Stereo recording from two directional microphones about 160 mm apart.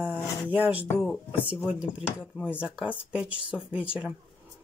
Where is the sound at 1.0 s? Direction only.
Centre (ahead or behind).